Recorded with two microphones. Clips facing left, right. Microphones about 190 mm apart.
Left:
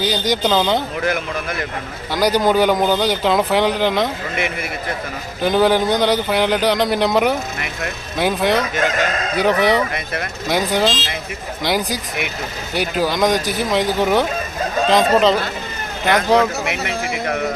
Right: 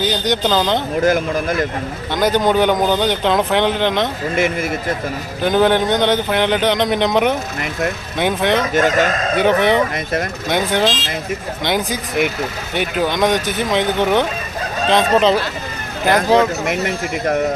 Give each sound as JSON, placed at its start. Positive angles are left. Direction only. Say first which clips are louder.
{"t": 0.0, "sound": "speech", "louder": "right 1 dB", "side_deg": 0}
{"t": 0.9, "sound": "speech", "louder": "right 6 dB", "side_deg": -40}
{"t": 2.4, "sound": "speech", "louder": "even", "side_deg": 5}
{"t": 4.4, "sound": "speech", "louder": "right 7 dB", "side_deg": -45}
{"t": 5.4, "sound": "speech", "louder": "right 1 dB", "side_deg": 5}
{"t": 8.7, "sound": "speech", "louder": "right 5 dB", "side_deg": -45}
{"t": 9.4, "sound": "speech", "louder": "right 1 dB", "side_deg": 0}
{"t": 9.9, "sound": "speech", "louder": "right 4 dB", "side_deg": -45}
{"t": 10.5, "sound": "speech", "louder": "even", "side_deg": 0}
{"t": 16.6, "sound": "speech", "louder": "right 3 dB", "side_deg": -45}